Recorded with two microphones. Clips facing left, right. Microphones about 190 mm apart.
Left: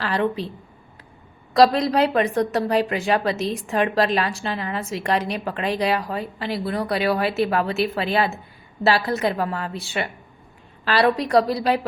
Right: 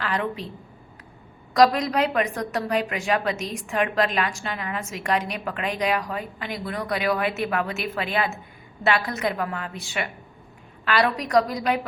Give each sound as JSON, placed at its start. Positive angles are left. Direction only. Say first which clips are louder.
{"t": 0.0, "sound": "a woman's voice", "louder": "left 5 dB", "side_deg": 30}
{"t": 1.5, "sound": "a woman's voice", "louder": "left 3 dB", "side_deg": 30}